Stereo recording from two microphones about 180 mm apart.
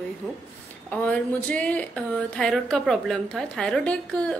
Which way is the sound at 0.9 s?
5° left (ahead or behind).